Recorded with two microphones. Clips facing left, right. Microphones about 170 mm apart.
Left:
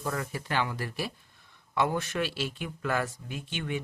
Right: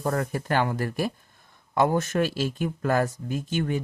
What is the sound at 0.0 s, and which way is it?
Speech, 50° right (ahead or behind).